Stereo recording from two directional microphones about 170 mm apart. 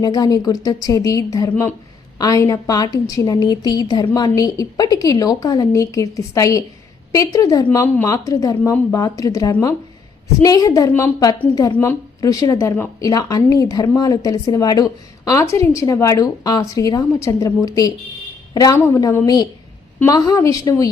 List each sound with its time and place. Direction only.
0.0 s speech: 25° left (ahead or behind)